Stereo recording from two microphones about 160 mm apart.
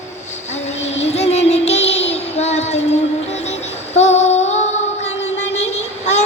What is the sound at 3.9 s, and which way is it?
Female singing, 45° left (ahead or behind).